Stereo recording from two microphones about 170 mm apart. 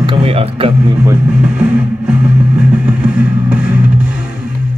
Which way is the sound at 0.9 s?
10° right (ahead or behind).